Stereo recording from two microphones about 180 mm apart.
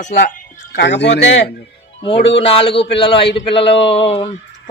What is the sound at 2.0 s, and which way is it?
A man's voice, 35° left (ahead or behind).